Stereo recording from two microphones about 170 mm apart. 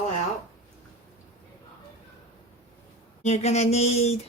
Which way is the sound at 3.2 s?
40° left (ahead or behind).